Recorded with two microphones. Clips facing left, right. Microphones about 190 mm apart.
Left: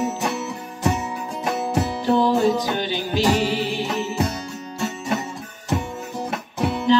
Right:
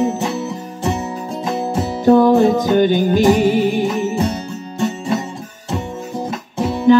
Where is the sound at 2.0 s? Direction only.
50° right (ahead or behind).